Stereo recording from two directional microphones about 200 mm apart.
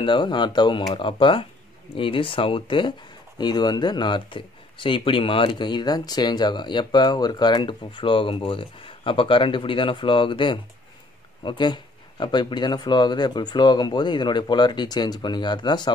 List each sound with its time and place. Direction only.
0.0 s speech: 25° left (ahead or behind)